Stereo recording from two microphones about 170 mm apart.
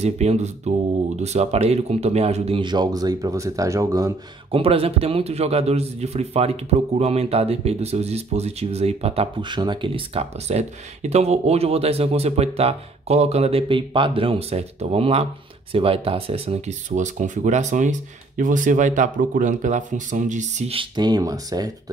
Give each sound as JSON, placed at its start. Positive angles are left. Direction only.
{"t": 0.0, "sound": "a man's voice", "side_deg": -40}
{"t": 4.5, "sound": "a man's voice", "side_deg": -35}